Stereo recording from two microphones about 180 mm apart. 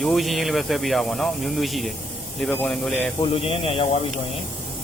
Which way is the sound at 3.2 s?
30° left (ahead or behind).